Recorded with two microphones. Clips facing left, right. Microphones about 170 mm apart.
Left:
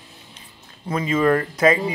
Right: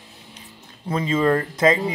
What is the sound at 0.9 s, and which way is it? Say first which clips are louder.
Speech: left 1 dB; 30° right (ahead or behind).